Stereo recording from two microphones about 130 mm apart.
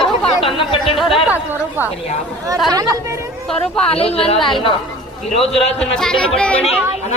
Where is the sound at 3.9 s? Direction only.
50° left (ahead or behind).